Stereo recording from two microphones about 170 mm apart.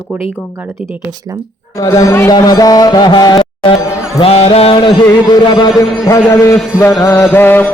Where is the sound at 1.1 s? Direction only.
20° right (ahead or behind).